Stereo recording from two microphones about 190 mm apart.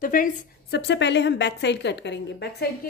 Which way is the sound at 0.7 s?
65° left (ahead or behind).